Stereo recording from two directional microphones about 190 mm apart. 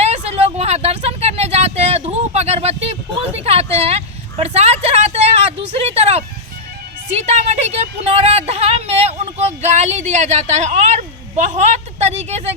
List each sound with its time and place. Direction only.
0.0 s vehicle: 35° right (ahead or behind)
7.1 s speech: 35° right (ahead or behind)